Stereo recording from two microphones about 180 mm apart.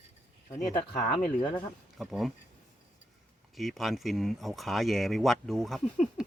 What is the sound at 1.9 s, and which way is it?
Speech, centre (ahead or behind).